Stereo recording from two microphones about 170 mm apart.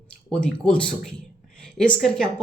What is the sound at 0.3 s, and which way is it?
Speech, 5° left (ahead or behind).